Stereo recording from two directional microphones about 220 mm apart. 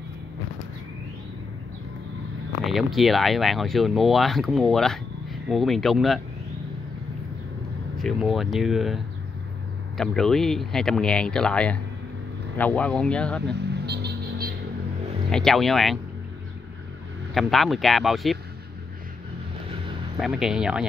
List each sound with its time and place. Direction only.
2.6 s speech: centre (ahead or behind)
8.0 s speech: centre (ahead or behind)
13.5 s vehicle: 50° right (ahead or behind)
15.3 s speech: centre (ahead or behind)
17.3 s speech: centre (ahead or behind)
20.2 s speech: centre (ahead or behind)